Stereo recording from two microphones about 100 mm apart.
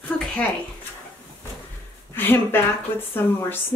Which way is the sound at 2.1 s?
20° left (ahead or behind).